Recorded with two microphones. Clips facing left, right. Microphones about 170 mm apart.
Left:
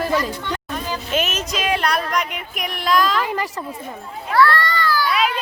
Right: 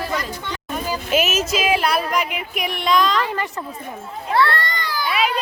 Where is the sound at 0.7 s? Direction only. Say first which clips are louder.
Right 4 dB; 10° right (ahead or behind); by 3.6 s 10° left (ahead or behind).